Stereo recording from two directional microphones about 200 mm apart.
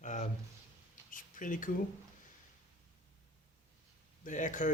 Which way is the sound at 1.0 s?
40° left (ahead or behind).